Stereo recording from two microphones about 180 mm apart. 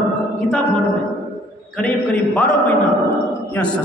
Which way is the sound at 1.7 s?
5° left (ahead or behind).